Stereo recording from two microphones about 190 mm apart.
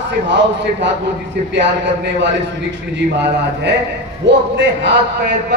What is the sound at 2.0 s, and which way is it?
Speech, 65° right (ahead or behind).